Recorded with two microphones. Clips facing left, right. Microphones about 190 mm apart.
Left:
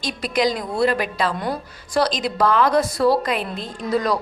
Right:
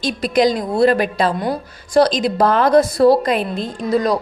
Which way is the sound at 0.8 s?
45° right (ahead or behind).